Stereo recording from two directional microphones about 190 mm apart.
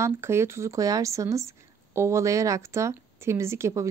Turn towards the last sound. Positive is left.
turn(degrees=-15)  # may be behind; listen again after turning